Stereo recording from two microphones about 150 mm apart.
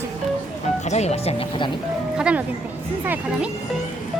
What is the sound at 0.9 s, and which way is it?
Speech, 50° left (ahead or behind).